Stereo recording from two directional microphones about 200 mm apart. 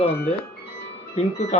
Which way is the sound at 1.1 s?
35° left (ahead or behind).